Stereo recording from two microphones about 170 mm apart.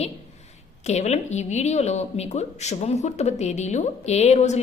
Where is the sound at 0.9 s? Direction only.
40° left (ahead or behind).